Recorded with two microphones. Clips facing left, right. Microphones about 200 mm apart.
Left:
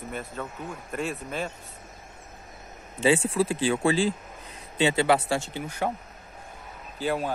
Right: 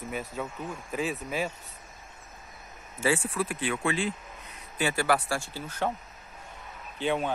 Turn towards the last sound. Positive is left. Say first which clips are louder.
# left 1 dB
turn(degrees=5)  # may be behind; listen again after turning